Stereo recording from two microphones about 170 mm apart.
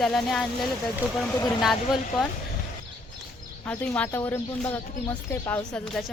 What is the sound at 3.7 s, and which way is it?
Speech, 5° left (ahead or behind).